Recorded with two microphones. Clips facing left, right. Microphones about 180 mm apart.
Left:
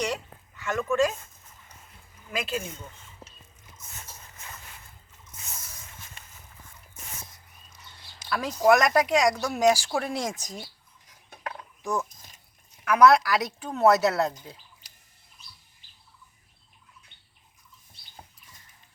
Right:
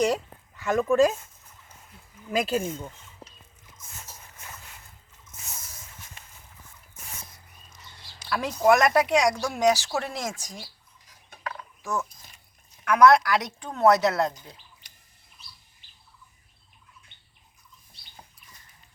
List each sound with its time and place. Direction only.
0.6 s speech: 35° right (ahead or behind)
2.3 s speech: 40° right (ahead or behind)
8.3 s speech: centre (ahead or behind); by 10.7 s 20° left (ahead or behind)
11.8 s speech: 15° left (ahead or behind)
12.8 s speech: 5° left (ahead or behind)